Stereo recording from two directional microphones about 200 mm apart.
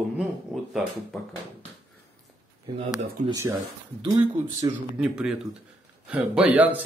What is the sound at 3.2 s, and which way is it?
Speech, 40° right (ahead or behind).